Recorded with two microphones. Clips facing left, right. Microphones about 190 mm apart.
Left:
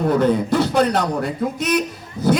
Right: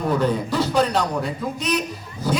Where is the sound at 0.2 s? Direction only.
50° left (ahead or behind).